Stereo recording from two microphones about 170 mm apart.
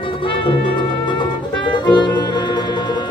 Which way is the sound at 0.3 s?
30° left (ahead or behind).